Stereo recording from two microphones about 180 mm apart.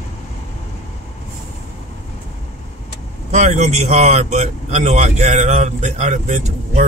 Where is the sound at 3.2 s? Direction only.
40° right (ahead or behind).